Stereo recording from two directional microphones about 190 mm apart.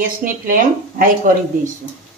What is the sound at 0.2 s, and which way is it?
A woman's voice, 45° right (ahead or behind).